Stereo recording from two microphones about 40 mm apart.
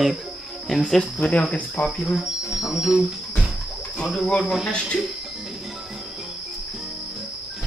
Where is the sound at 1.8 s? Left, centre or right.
Left.